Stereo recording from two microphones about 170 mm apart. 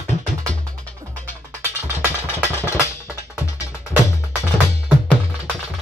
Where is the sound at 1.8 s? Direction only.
10° right (ahead or behind).